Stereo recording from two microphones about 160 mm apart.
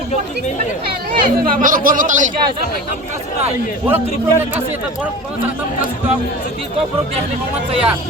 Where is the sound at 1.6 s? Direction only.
60° right (ahead or behind).